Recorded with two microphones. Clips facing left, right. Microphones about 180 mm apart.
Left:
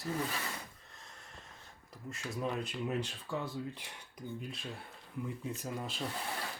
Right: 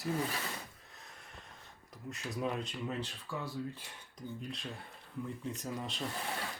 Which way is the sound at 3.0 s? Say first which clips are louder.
Left 2 dB; 15° left (ahead or behind).